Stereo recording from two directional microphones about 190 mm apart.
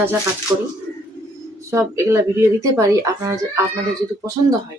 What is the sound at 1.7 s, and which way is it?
Speech, 15° right (ahead or behind).